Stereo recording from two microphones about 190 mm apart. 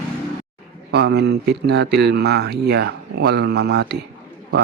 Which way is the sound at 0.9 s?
60° right (ahead or behind).